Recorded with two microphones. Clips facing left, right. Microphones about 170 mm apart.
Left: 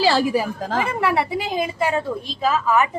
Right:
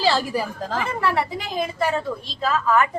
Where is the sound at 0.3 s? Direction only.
15° left (ahead or behind).